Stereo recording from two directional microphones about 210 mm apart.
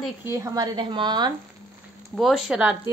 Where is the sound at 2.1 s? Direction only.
Centre (ahead or behind).